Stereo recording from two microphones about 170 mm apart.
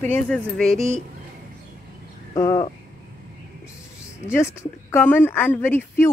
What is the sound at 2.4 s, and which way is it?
Speech, 20° left (ahead or behind).